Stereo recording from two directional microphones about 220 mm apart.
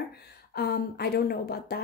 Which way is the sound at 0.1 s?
45° left (ahead or behind).